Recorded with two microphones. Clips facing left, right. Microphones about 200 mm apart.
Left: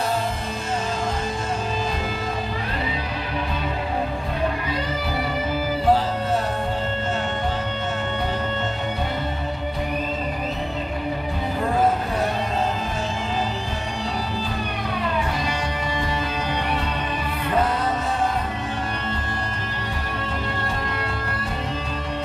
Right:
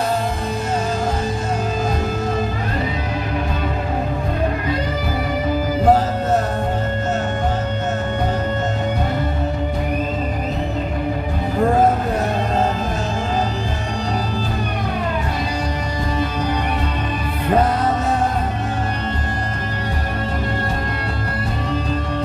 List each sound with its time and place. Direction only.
5.9 s music: 45° right (ahead or behind)